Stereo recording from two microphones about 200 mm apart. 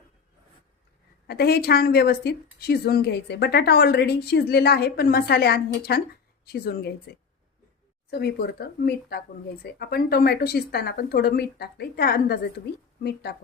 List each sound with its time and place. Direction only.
1.3 s a woman's voice: 50° left (ahead or behind)
8.1 s a woman's voice: 55° left (ahead or behind)